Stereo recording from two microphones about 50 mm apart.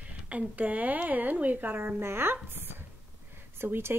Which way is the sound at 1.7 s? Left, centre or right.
Right.